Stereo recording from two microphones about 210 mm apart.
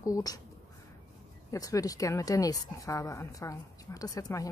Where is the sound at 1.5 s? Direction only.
15° left (ahead or behind).